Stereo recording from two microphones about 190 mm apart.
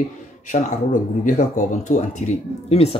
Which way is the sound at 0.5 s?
40° left (ahead or behind).